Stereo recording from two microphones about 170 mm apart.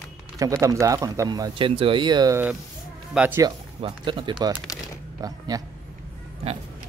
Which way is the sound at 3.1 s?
10° right (ahead or behind).